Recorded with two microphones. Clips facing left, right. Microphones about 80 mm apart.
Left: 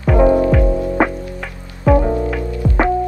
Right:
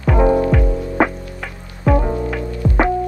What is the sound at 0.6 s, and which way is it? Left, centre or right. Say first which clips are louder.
Music: left 4 dB; left.